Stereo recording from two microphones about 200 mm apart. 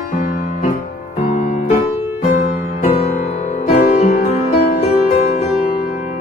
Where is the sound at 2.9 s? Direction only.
30° left (ahead or behind).